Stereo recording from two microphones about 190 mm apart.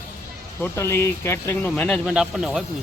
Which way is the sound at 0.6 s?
15° left (ahead or behind).